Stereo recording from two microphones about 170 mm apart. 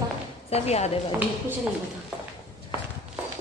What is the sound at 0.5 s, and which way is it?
Speech, 40° left (ahead or behind).